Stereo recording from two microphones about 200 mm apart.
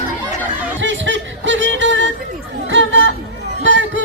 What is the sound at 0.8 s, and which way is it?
Music, 65° right (ahead or behind).